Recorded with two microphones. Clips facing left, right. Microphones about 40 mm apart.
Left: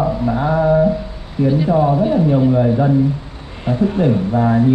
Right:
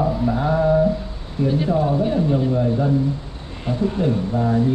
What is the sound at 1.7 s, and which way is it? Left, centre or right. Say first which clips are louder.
Speech: left 5 dB; centre.